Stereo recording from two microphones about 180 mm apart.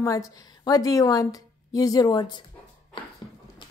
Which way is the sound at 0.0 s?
20° left (ahead or behind).